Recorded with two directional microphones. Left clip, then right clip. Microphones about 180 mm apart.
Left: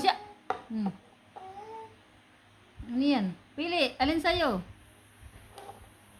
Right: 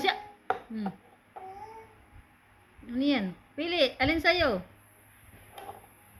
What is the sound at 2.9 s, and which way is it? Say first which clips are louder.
Speech: even; 15° left (ahead or behind).